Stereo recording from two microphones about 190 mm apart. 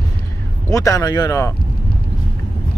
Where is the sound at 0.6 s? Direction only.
15° left (ahead or behind).